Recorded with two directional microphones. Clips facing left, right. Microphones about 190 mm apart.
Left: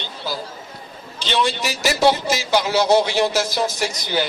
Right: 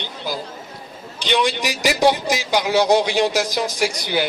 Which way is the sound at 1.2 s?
15° right (ahead or behind).